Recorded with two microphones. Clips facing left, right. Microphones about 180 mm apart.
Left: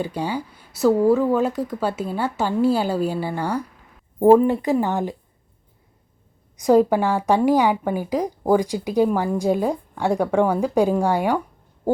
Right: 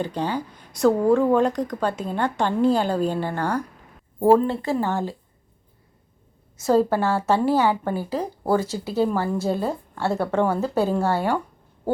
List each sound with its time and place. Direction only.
0.0 s a woman's voice: 10° left (ahead or behind)
6.6 s a woman's voice: 15° left (ahead or behind)